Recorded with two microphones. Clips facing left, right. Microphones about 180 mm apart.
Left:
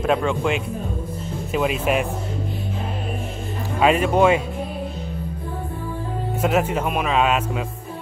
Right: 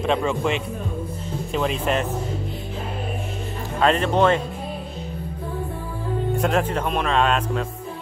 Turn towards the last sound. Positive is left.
turn(degrees=5)  # may be behind; listen again after turning